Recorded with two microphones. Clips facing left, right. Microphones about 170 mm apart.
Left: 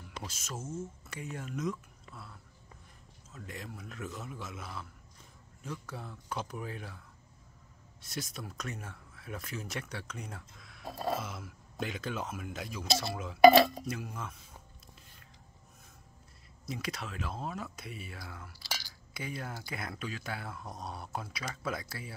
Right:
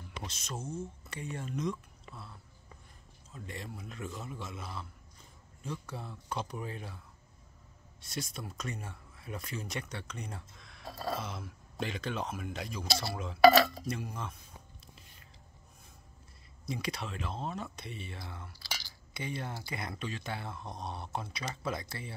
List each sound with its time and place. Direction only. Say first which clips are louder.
0.3 s speech: right 1 dB; 5° left (ahead or behind)
3.4 s speech: right 1 dB; centre (ahead or behind)
8.0 s speech: right 1 dB; centre (ahead or behind)
10.9 s a sound: left 3 dB; 20° left (ahead or behind)
11.1 s speech: even; 5° left (ahead or behind)
13.4 s speech: left 2 dB; 15° left (ahead or behind)
13.8 s speech: right 1 dB; 5° left (ahead or behind)
16.6 s speech: right 2 dB; centre (ahead or behind)